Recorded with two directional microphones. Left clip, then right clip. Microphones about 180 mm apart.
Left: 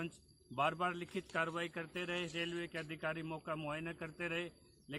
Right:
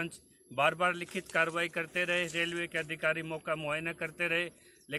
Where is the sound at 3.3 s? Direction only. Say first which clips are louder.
Right 8 dB; 10° right (ahead or behind).